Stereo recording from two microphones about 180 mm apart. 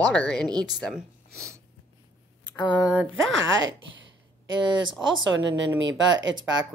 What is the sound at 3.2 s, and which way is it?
Speech, 90° right.